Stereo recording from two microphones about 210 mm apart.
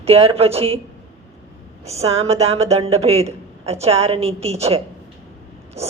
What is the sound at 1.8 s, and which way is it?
A woman's voice, 30° right (ahead or behind).